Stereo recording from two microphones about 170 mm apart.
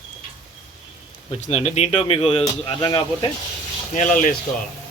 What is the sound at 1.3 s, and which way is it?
Speech, 40° left (ahead or behind).